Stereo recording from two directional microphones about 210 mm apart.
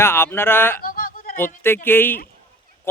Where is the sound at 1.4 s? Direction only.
10° left (ahead or behind).